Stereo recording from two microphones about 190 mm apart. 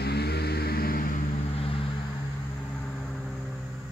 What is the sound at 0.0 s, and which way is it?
Vehicle, 60° left (ahead or behind).